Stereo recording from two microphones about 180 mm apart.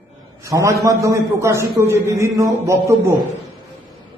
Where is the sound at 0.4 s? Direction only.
15° right (ahead or behind).